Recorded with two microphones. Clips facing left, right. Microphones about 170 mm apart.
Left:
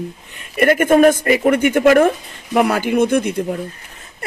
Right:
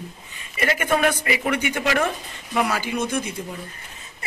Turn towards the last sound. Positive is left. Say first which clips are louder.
# left 10 dB
turn(degrees=60)  # may be behind; listen again after turning